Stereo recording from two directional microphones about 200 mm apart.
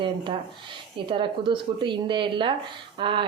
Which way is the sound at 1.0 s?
25° right (ahead or behind).